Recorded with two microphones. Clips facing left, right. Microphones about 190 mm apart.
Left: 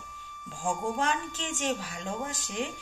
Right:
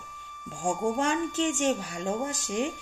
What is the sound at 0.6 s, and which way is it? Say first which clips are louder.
A child's voice: right 3 dB; 45° right (ahead or behind).